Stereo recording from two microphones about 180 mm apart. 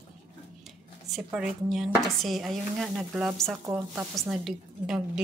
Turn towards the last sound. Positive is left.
turn(degrees=-5)  # may be behind; listen again after turning